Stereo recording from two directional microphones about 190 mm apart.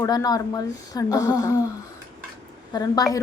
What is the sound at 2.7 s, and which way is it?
Speech, 20° left (ahead or behind).